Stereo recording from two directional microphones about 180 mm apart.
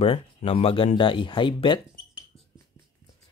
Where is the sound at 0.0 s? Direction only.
35° left (ahead or behind).